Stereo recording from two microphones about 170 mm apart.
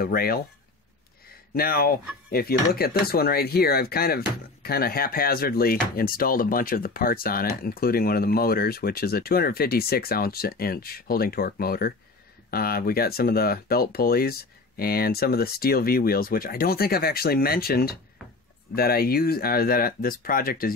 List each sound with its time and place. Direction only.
0.0 s speech: 60° left (ahead or behind)
1.5 s speech: 60° left (ahead or behind)